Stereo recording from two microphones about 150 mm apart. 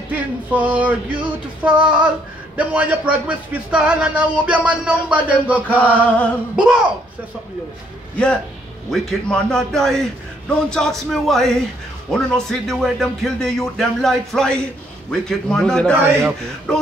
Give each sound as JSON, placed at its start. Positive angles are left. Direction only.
{"t": 0.1, "sound": "speech", "side_deg": -10}
{"t": 6.0, "sound": "a sound", "side_deg": 10}
{"t": 6.5, "sound": "speech", "side_deg": -5}
{"t": 8.9, "sound": "speech", "side_deg": 5}
{"t": 16.1, "sound": "speech", "side_deg": -15}
{"t": 16.7, "sound": "speech", "side_deg": 5}